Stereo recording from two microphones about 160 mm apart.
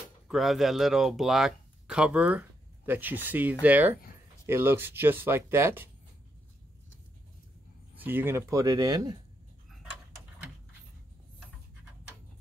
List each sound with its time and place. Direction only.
0.3 s speech: centre (ahead or behind)
7.9 s speech: 10° right (ahead or behind)